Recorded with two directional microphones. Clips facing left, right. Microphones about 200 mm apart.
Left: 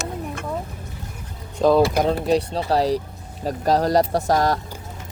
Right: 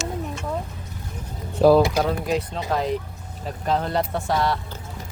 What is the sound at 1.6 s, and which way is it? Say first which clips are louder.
Speech: right 2 dB; 10° right (ahead or behind).